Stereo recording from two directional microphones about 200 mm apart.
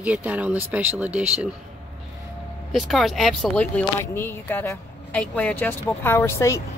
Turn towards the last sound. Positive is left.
turn(degrees=15)  # may be behind; listen again after turning